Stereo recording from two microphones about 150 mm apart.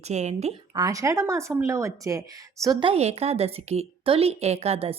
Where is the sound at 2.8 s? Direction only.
40° right (ahead or behind).